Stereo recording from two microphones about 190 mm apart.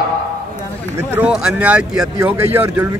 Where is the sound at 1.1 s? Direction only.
5° right (ahead or behind).